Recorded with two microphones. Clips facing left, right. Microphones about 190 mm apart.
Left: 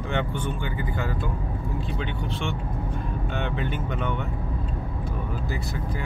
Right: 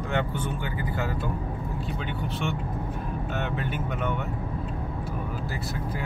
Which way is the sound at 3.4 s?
5° right (ahead or behind).